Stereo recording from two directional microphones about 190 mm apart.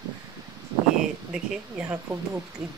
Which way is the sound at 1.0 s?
5° right (ahead or behind).